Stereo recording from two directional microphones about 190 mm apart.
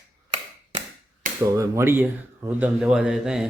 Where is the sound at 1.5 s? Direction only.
15° right (ahead or behind).